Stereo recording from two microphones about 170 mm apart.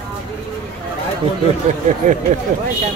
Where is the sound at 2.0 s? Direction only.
50° right (ahead or behind).